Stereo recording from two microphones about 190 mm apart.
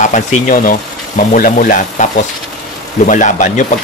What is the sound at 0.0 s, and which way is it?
Speech, 40° left (ahead or behind).